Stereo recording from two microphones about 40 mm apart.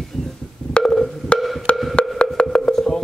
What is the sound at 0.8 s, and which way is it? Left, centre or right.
Percussion, left.